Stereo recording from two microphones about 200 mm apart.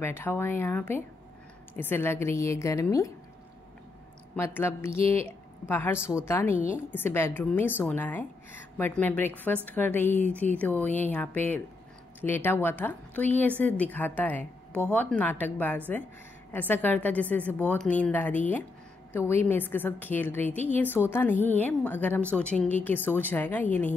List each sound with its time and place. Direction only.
0.0 s a woman's voice: 10° left (ahead or behind)
4.4 s a woman's voice: 10° left (ahead or behind)
4.9 s speech: 30° right (ahead or behind)
5.7 s a woman's voice: 10° left (ahead or behind)
5.9 s speech: 5° right (ahead or behind)
6.2 s a woman's voice: 10° left (ahead or behind)